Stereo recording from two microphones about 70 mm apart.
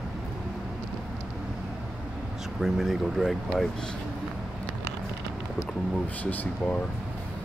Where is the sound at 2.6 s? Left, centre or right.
Centre.